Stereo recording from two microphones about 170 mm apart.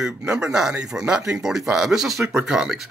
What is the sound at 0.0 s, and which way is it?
A man's voice, 5° right (ahead or behind).